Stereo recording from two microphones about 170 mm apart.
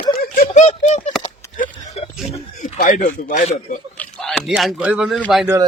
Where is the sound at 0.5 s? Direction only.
45° left (ahead or behind).